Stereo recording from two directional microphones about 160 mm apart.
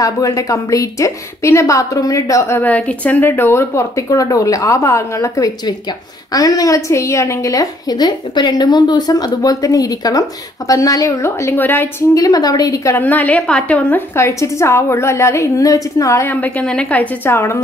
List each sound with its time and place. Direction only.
0.0 s a woman's voice: 20° left (ahead or behind)